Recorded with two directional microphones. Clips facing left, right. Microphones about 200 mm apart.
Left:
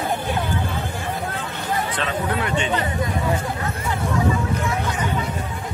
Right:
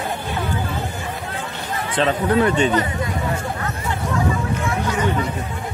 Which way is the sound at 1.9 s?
35° right (ahead or behind).